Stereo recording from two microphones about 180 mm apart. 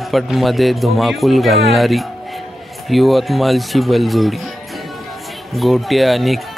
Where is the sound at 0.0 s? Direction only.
Centre (ahead or behind).